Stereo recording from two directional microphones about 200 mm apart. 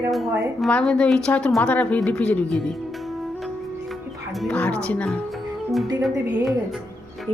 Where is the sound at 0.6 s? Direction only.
5° left (ahead or behind).